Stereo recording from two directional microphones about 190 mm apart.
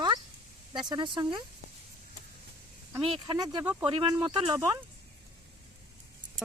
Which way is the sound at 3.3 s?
20° right (ahead or behind).